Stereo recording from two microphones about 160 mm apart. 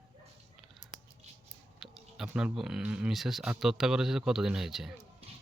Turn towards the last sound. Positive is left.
turn(degrees=-5)  # may be behind; listen again after turning